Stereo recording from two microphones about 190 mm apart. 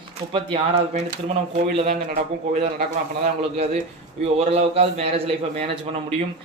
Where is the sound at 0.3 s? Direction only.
25° right (ahead or behind).